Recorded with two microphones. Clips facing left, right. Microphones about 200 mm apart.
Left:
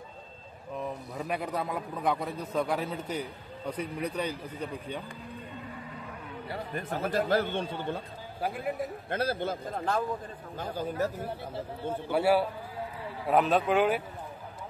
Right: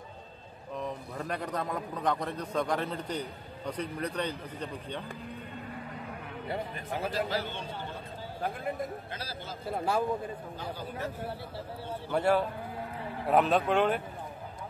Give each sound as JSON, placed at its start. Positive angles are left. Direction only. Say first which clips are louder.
{"t": 0.7, "sound": "a man's voice", "louder": "left 1 dB", "side_deg": 10}
{"t": 7.1, "sound": "a man's voice", "louder": "left 7 dB", "side_deg": 50}
{"t": 8.4, "sound": "speech", "louder": "left 2 dB", "side_deg": 5}
{"t": 9.1, "sound": "a man's voice", "louder": "left 11 dB", "side_deg": 55}
{"t": 9.7, "sound": "a man's voice", "louder": "right 5 dB", "side_deg": -10}
{"t": 12.1, "sound": "a man's voice", "louder": "left 1 dB", "side_deg": 10}